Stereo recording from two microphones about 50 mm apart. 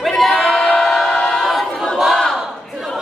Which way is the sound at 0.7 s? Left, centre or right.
Centre.